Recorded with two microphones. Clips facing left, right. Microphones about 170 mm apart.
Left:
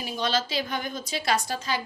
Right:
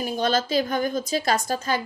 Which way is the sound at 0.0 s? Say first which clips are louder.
Right 4 dB; 50° right (ahead or behind).